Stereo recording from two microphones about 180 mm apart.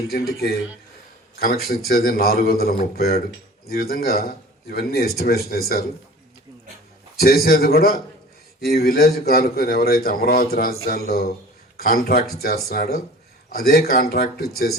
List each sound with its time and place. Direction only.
0.1 s speech: 60° left (ahead or behind)
7.2 s speech: 55° left (ahead or behind)